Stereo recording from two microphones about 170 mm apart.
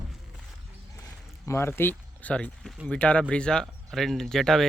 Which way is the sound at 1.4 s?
15° left (ahead or behind).